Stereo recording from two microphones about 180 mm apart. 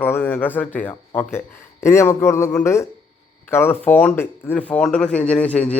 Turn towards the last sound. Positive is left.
turn(degrees=5)  # may be behind; listen again after turning